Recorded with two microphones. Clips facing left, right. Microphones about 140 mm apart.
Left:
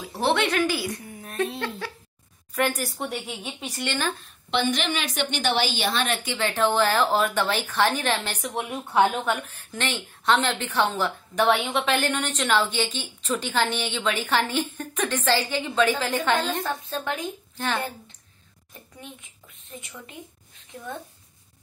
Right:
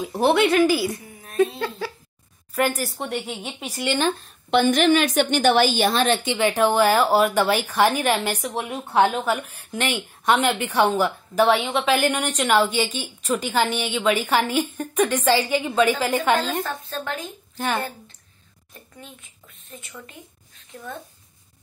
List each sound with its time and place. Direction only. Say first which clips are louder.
0.1 s a woman's voice: right 5 dB; 10° right (ahead or behind)
4.5 s a woman's voice: right 8 dB; 50° right (ahead or behind)
6.0 s a woman's voice: right 7 dB; 30° right (ahead or behind)
6.3 s a woman's voice: right 2 dB; 15° right (ahead or behind)
9.5 s a woman's voice: right 4 dB; 15° right (ahead or behind)
11.4 s a woman's voice: right 2 dB; centre (ahead or behind)
16.6 s a woman's voice: left 1 dB; 15° left (ahead or behind)
17.6 s a woman's voice: right 3 dB; 10° right (ahead or behind)
19.8 s a woman's voice: right 1 dB; 15° left (ahead or behind)